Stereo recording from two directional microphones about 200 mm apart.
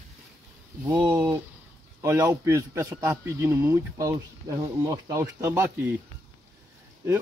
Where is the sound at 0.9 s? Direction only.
20° right (ahead or behind).